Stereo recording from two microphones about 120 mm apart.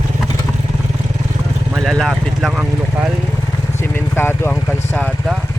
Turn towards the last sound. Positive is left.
turn(degrees=20)  # may be behind; listen again after turning